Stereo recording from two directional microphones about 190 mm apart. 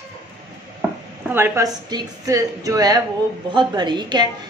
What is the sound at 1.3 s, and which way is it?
A woman's voice, 10° right (ahead or behind).